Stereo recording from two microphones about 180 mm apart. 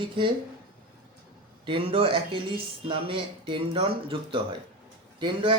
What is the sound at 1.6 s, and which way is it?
Speech, 30° right (ahead or behind).